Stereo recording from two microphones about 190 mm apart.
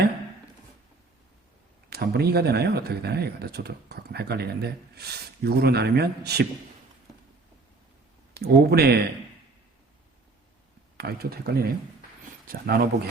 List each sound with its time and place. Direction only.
1.9 s speech: 55° right (ahead or behind)
8.3 s speech: 55° right (ahead or behind)
10.9 s speech: 55° right (ahead or behind)